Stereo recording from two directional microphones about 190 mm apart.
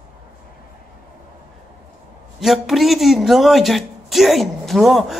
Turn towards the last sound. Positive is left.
turn(degrees=0)  # may be behind; listen again after turning